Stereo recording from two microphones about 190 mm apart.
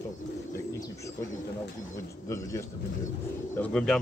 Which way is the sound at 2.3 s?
15° left (ahead or behind).